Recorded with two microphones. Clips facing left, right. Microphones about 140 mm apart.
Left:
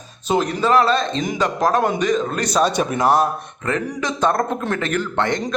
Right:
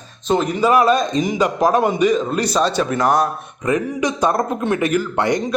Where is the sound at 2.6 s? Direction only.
15° left (ahead or behind).